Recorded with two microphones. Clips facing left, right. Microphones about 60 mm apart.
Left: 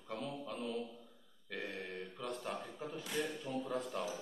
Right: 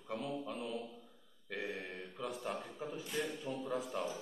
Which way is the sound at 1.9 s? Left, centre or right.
Centre.